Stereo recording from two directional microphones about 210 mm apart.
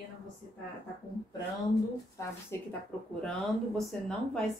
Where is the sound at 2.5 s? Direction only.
10° left (ahead or behind).